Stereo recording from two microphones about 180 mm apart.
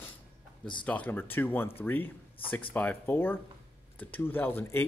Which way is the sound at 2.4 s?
30° left (ahead or behind).